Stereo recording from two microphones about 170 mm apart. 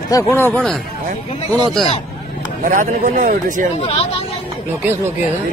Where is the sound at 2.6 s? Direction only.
50° right (ahead or behind).